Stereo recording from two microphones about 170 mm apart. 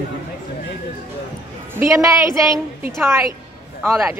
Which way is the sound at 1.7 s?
15° right (ahead or behind).